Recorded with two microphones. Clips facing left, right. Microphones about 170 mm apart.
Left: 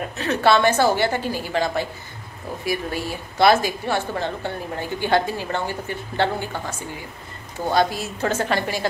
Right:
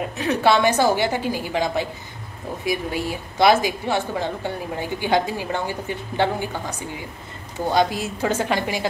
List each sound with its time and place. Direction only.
0.2 s a woman's voice: 15° right (ahead or behind)
7.7 s a woman's voice: 15° right (ahead or behind)